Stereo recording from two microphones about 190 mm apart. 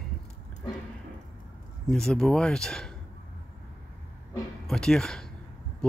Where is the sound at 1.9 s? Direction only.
5° left (ahead or behind).